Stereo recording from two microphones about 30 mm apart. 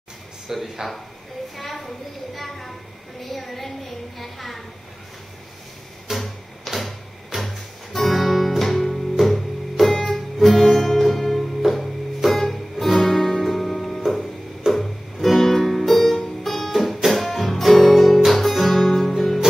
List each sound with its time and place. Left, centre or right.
0.5 s speech: centre
1.6 s a woman's voice: centre
4.2 s a sound: centre
6.1 s tick-tock: centre
8.0 s music: centre
14.7 s music: centre